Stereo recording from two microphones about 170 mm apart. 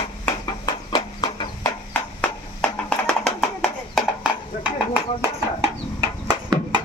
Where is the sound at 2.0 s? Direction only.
5° left (ahead or behind).